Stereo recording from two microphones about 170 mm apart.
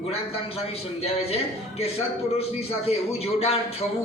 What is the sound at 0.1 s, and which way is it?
A man's voice, 35° left (ahead or behind).